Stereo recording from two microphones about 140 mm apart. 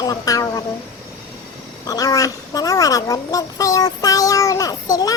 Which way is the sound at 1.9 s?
25° left (ahead or behind).